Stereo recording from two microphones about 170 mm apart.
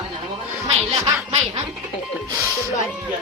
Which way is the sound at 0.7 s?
35° right (ahead or behind).